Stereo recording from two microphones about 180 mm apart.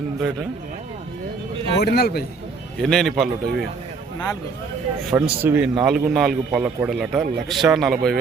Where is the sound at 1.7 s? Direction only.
65° left (ahead or behind).